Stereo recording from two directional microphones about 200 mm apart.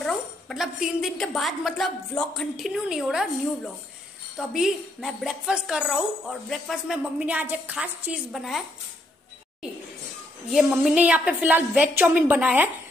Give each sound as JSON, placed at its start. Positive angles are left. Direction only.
{"t": 0.0, "sound": "a woman's voice", "side_deg": 0}
{"t": 4.4, "sound": "a woman's voice", "side_deg": 0}
{"t": 10.5, "sound": "a woman's voice", "side_deg": 0}